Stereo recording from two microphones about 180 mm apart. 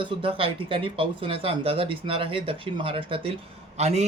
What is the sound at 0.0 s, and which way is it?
A man's voice, 30° right (ahead or behind).